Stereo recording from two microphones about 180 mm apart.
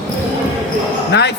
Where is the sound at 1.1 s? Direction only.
70° left (ahead or behind).